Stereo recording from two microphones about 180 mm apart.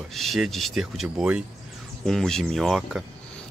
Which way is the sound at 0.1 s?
Centre (ahead or behind).